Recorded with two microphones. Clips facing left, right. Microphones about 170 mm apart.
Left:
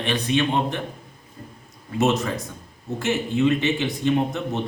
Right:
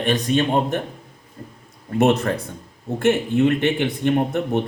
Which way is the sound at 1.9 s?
60° right (ahead or behind).